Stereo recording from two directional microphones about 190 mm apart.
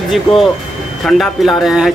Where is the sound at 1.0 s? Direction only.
Centre (ahead or behind).